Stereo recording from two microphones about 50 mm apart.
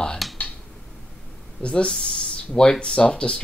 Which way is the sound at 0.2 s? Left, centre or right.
Centre.